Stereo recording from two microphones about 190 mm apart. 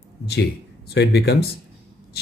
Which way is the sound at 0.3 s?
60° left (ahead or behind).